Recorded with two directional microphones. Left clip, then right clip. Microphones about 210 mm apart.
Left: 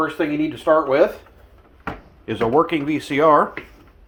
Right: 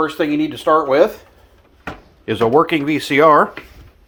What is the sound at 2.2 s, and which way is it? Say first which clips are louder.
Speech: right 4 dB; 45° right (ahead or behind).